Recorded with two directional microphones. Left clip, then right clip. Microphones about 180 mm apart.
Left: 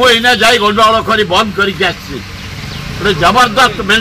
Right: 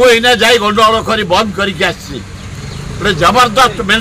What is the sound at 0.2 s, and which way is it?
A man's voice, 30° right (ahead or behind).